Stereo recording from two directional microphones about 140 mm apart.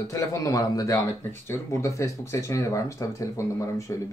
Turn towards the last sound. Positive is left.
turn(degrees=20)  # may be behind; listen again after turning